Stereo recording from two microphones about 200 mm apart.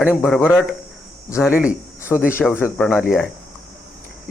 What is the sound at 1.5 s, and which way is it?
Speech, 5° right (ahead or behind).